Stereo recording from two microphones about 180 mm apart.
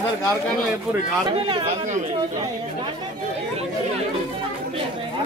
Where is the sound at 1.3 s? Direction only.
30° right (ahead or behind).